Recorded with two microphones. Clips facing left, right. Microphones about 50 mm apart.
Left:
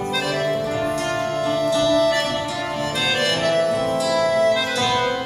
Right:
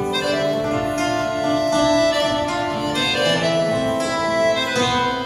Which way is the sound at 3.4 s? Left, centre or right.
Centre.